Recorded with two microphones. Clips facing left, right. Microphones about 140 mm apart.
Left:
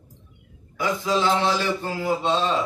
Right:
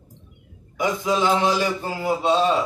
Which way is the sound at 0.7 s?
15° right (ahead or behind).